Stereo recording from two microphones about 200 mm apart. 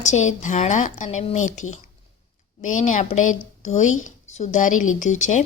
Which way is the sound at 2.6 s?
40° left (ahead or behind).